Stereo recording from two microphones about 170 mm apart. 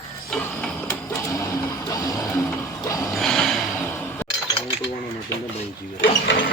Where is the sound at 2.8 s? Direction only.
20° left (ahead or behind).